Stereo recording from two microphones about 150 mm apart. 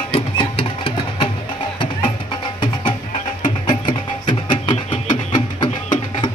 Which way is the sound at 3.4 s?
35° left (ahead or behind).